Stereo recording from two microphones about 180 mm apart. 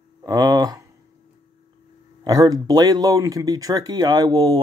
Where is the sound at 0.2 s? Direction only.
20° right (ahead or behind).